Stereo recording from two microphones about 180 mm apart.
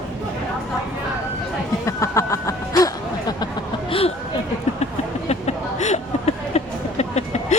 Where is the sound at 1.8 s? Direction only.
15° left (ahead or behind).